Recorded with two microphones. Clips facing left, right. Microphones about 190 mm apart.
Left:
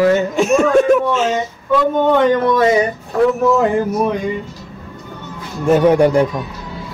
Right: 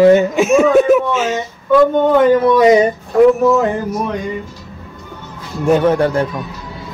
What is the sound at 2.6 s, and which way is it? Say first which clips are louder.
Speech: right 5 dB; 15° right (ahead or behind).